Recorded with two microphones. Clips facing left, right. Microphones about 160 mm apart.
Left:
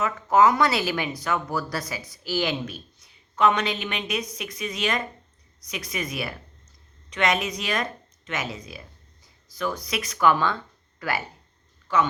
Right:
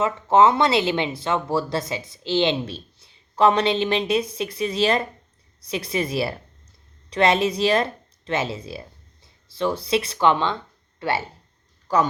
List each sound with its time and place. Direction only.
0.0 s speech: 25° right (ahead or behind)
11.9 s speech: 40° right (ahead or behind)